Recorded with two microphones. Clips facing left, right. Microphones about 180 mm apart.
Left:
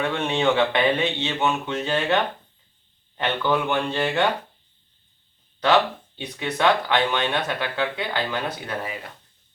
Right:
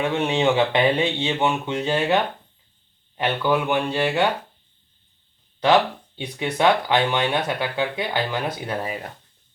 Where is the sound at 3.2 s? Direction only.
10° right (ahead or behind).